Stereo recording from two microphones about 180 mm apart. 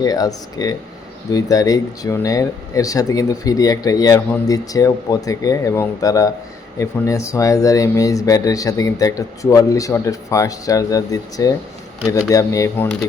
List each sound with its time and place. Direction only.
0.0 s speech: 20° left (ahead or behind)